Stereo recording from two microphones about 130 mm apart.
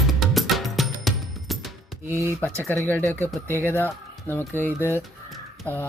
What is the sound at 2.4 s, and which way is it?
Speech, 15° left (ahead or behind).